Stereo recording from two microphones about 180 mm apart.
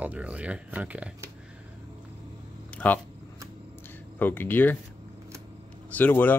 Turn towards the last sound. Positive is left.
turn(degrees=10)  # may be behind; listen again after turning